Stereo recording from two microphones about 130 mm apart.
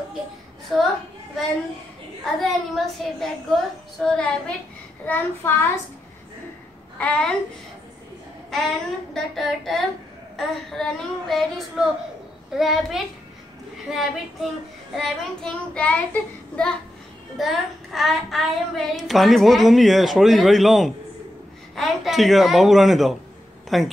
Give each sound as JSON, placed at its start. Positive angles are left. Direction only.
{"t": 0.7, "sound": "speech", "side_deg": 0}
{"t": 2.4, "sound": "speech", "side_deg": 0}
{"t": 4.0, "sound": "child singing", "side_deg": 5}
{"t": 7.0, "sound": "speech", "side_deg": 5}
{"t": 8.5, "sound": "speech", "side_deg": 5}
{"t": 15.0, "sound": "child singing", "side_deg": 5}
{"t": 17.4, "sound": "speech", "side_deg": 0}